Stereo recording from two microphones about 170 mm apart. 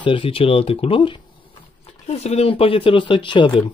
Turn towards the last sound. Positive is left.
turn(degrees=30)  # may be behind; listen again after turning